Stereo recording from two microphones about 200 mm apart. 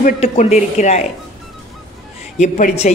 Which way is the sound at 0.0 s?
35° left (ahead or behind).